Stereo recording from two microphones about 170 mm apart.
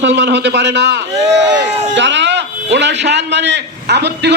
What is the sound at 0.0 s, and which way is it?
A man's voice, 90° right.